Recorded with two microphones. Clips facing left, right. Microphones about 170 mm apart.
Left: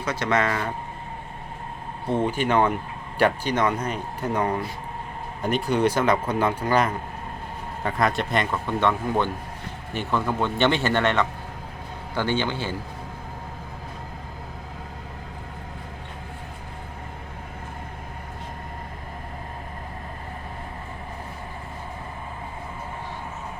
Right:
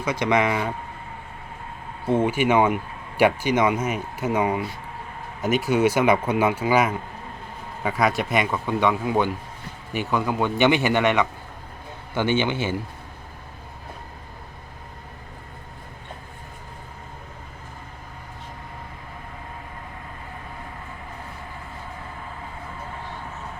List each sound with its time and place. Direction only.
0.0 s speech: 15° right (ahead or behind)
2.0 s a man's voice: 10° right (ahead or behind)